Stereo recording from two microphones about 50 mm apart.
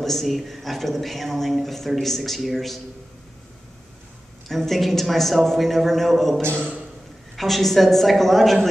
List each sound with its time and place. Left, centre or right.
0.0 s speech: centre
4.5 s speech: centre
6.5 s speech: right
7.3 s speech: centre